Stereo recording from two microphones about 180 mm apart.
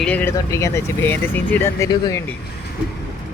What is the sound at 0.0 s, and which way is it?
Speech, 10° left (ahead or behind).